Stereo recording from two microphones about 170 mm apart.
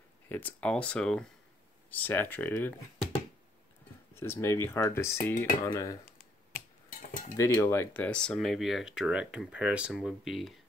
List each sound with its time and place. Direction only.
0.3 s speech: 10° left (ahead or behind)
4.1 s speech: 15° left (ahead or behind)
6.5 s a sound: 55° left (ahead or behind)
7.3 s speech: 15° left (ahead or behind); by 10.6 s centre (ahead or behind)